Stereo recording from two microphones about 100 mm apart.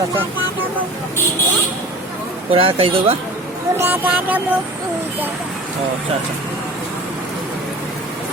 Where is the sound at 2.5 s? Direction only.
70° right (ahead or behind).